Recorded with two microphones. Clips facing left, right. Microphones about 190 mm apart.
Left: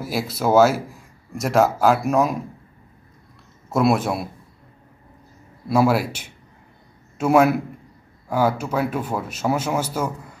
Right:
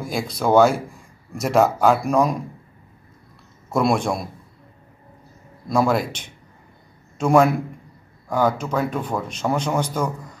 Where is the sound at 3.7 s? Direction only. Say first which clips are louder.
Left 1 dB; 5° left (ahead or behind).